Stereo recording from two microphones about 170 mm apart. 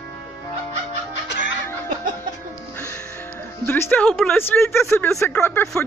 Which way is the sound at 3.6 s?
10° left (ahead or behind).